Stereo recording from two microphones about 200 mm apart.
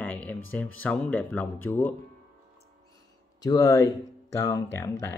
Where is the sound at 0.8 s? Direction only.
5° left (ahead or behind).